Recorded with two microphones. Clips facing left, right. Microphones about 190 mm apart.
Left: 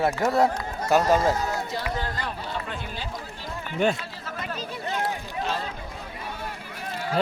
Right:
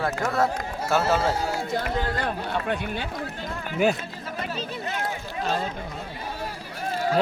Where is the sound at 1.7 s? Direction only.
50° right (ahead or behind).